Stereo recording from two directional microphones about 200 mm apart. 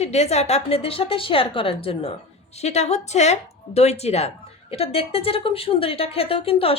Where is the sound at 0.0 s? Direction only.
30° left (ahead or behind).